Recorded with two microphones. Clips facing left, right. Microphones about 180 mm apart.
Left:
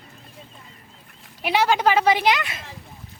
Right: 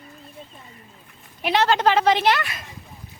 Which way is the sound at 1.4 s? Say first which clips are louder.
Even; 10° left (ahead or behind).